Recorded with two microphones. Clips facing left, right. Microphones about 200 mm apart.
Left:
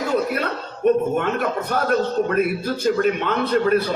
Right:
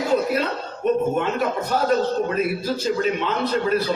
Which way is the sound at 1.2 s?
55° left (ahead or behind).